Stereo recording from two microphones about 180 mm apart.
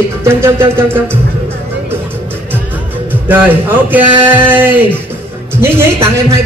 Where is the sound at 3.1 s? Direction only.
10° right (ahead or behind).